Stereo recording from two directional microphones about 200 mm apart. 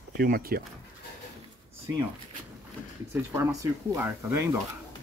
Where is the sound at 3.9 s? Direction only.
10° right (ahead or behind).